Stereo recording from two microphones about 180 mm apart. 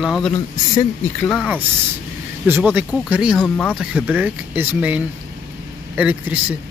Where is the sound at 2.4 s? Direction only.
10° right (ahead or behind).